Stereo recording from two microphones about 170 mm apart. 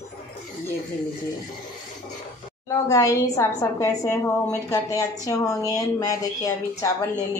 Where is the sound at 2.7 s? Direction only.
20° left (ahead or behind).